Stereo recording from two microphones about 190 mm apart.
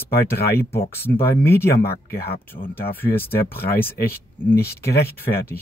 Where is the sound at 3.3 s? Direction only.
55° left (ahead or behind).